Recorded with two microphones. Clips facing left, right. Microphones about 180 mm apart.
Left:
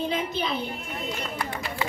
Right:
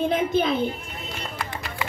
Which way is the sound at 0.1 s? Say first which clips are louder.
Right 6 dB; 50° right (ahead or behind).